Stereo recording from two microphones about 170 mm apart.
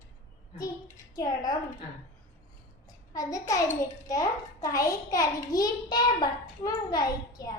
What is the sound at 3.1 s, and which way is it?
A child's voice, 20° left (ahead or behind).